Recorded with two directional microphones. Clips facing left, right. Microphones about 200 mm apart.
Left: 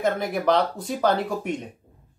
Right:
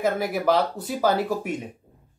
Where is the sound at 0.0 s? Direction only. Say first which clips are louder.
Even; 5° right (ahead or behind).